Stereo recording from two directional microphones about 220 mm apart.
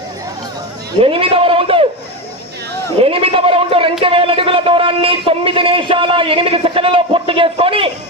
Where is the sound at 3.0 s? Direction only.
25° right (ahead or behind).